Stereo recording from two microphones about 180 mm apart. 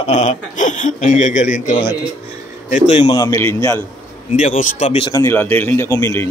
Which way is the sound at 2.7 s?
40° left (ahead or behind).